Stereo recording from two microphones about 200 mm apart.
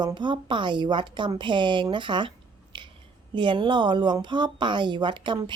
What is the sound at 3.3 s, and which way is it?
Speech, 25° right (ahead or behind).